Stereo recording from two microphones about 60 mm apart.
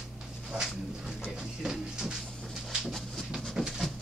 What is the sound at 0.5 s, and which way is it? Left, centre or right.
Dog, centre.